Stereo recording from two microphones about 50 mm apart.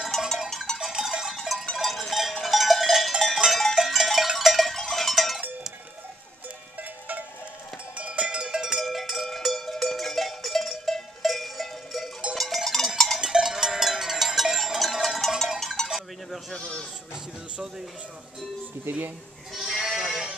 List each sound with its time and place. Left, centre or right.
0.1 s cowbell: centre
0.7 s cowbell: centre
6.8 s cowbell: right
7.9 s cowbell: right
8.8 s cowbell: centre
13.2 s cowbell: centre
15.9 s a sound: centre
16.5 s sheep: centre
17.1 s a sound: centre
18.9 s speech: right
19.5 s sheep: centre
20.0 s music: centre